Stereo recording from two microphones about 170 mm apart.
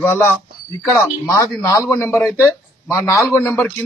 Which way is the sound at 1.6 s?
20° left (ahead or behind).